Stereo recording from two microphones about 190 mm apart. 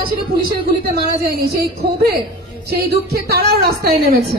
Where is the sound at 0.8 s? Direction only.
55° right (ahead or behind).